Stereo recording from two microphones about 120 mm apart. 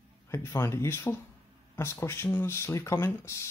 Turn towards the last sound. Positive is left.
turn(degrees=25)  # may be behind; listen again after turning